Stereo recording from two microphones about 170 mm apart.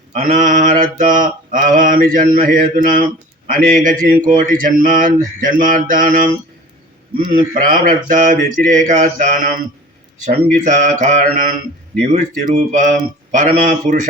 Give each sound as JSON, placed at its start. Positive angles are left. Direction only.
{"t": 0.1, "sound": "mantra", "side_deg": -45}
{"t": 7.3, "sound": "mantra", "side_deg": -55}